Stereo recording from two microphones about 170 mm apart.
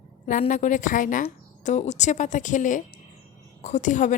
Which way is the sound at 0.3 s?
50° left (ahead or behind).